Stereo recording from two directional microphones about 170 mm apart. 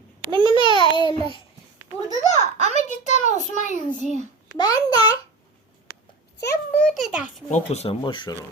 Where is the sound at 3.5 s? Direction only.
50° left (ahead or behind).